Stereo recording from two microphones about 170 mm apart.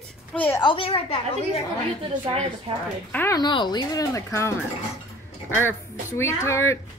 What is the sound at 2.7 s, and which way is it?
Speech, 35° right (ahead or behind).